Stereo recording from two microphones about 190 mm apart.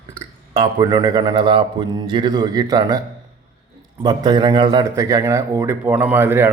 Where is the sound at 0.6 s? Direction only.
20° right (ahead or behind).